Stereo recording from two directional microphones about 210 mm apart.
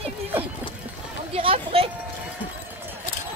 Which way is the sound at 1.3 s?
30° right (ahead or behind).